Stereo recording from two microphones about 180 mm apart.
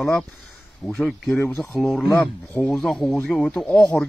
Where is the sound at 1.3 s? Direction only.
10° left (ahead or behind).